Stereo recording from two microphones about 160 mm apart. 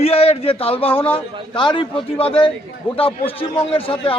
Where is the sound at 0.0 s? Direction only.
40° left (ahead or behind).